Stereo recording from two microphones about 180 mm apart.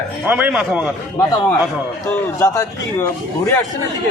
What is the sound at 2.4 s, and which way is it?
Speech, 15° left (ahead or behind).